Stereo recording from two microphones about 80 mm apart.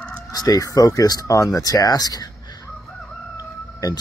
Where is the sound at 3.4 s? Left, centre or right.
Left.